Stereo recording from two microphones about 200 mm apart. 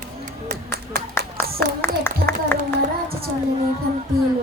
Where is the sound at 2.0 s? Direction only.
10° left (ahead or behind).